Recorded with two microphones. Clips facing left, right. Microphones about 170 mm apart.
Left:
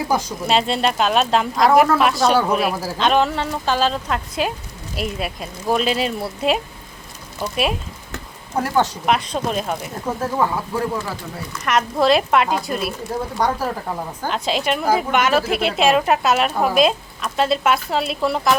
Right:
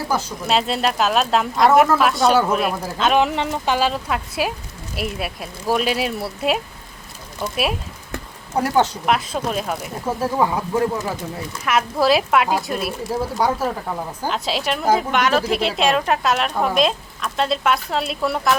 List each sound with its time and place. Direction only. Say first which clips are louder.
0.1 s speech: left 1 dB; 10° left (ahead or behind)
0.4 s speech: left 1 dB; centre (ahead or behind)
3.2 s speech: right 1 dB; 15° right (ahead or behind)
9.0 s speech: left 1 dB; centre (ahead or behind)
10.2 s speech: right 1 dB; 15° right (ahead or behind)
11.6 s speech: left 1 dB; 5° right (ahead or behind)